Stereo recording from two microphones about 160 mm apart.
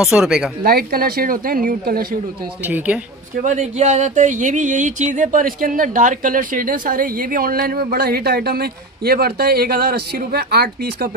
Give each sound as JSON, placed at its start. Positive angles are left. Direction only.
{"t": 0.0, "sound": "a woman's voice", "side_deg": -5}
{"t": 0.7, "sound": "speech", "side_deg": -70}
{"t": 2.6, "sound": "speech", "side_deg": -10}
{"t": 3.4, "sound": "speech", "side_deg": -45}